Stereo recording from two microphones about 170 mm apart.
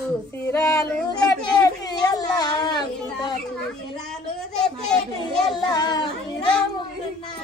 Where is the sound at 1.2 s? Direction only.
20° left (ahead or behind).